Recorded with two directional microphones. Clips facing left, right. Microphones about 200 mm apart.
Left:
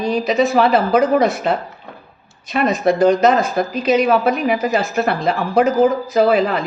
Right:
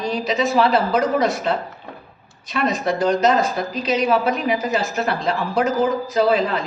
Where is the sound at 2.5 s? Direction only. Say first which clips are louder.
Left 5 dB; 55° left (ahead or behind).